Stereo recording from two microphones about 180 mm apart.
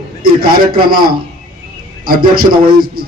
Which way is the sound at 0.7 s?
55° right (ahead or behind).